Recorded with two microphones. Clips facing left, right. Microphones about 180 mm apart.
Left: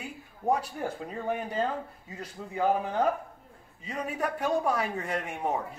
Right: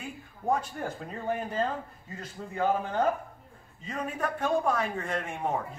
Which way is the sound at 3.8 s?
10° left (ahead or behind).